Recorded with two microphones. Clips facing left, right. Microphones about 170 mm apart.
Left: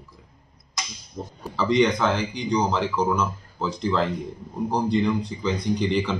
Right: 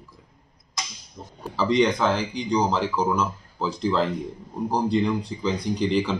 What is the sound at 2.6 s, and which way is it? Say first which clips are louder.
A man's voice: even; 5° right (ahead or behind).